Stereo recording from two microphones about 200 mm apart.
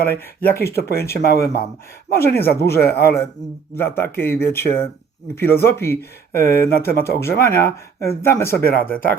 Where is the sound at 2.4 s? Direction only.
50° left (ahead or behind).